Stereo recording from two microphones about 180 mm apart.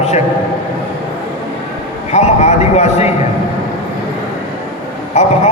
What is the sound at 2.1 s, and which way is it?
A man's voice, 40° left (ahead or behind).